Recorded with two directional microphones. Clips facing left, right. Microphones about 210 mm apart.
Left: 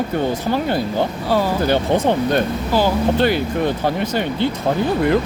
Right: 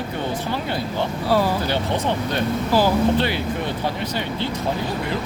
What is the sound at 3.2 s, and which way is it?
Speech, 45° left (ahead or behind).